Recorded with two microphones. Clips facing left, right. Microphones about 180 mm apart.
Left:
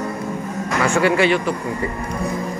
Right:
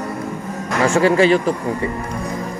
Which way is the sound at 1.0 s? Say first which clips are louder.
Right 4 dB; 35° right (ahead or behind).